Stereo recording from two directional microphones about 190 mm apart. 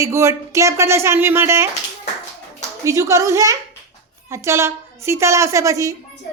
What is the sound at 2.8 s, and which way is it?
Speech, 15° right (ahead or behind).